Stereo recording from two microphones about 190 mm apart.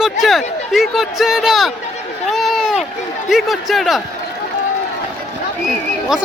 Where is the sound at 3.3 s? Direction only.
Centre (ahead or behind).